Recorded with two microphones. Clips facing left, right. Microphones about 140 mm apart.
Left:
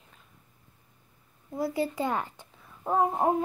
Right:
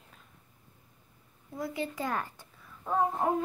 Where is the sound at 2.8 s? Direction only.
35° left (ahead or behind).